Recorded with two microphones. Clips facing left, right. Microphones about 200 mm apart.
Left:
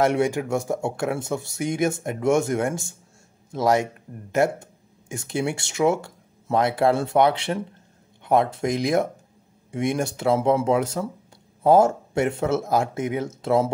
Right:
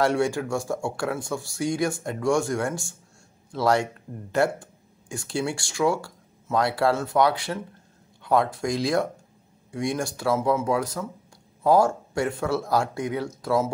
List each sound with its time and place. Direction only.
0.0 s speech: 20° left (ahead or behind)